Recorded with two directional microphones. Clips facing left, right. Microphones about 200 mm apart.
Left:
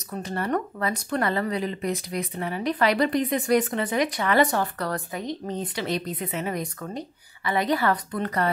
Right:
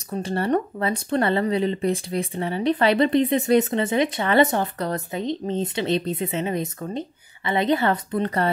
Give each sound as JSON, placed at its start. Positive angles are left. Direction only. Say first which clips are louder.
{"t": 0.1, "sound": "speech", "louder": "right 4 dB", "side_deg": -30}